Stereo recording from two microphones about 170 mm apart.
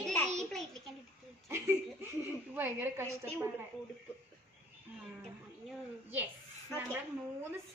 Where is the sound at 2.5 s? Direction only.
10° right (ahead or behind).